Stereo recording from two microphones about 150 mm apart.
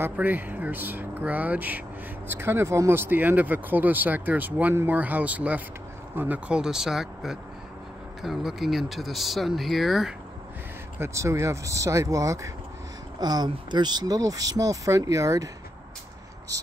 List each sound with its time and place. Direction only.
0.0 s speech: 10° right (ahead or behind)
11.0 s speech: 20° right (ahead or behind)